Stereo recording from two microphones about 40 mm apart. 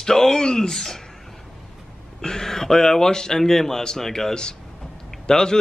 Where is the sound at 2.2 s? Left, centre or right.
Centre.